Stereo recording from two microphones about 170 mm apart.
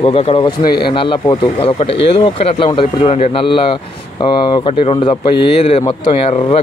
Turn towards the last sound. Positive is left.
turn(degrees=35)  # may be behind; listen again after turning